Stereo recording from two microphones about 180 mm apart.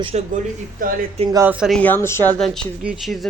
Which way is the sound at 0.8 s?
50° right (ahead or behind).